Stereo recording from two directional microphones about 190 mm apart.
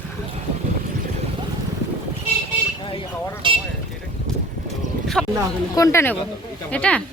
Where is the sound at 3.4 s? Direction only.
25° right (ahead or behind).